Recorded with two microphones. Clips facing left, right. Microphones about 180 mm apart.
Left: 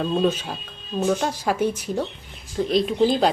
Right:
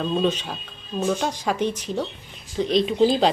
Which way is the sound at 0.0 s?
5° left (ahead or behind).